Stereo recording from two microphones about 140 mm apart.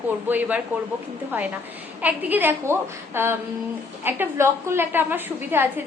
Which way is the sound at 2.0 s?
15° right (ahead or behind).